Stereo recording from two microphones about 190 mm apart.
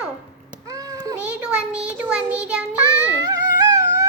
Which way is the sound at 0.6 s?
20° right (ahead or behind).